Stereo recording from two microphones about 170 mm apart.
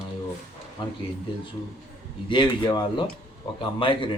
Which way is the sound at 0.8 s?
25° left (ahead or behind).